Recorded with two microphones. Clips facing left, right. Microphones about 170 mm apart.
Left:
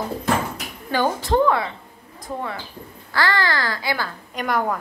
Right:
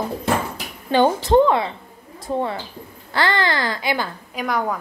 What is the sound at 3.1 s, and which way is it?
A child's voice, 20° right (ahead or behind).